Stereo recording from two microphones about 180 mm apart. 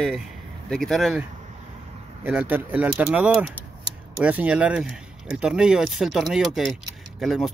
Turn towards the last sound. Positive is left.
turn(degrees=0)  # may be behind; listen again after turning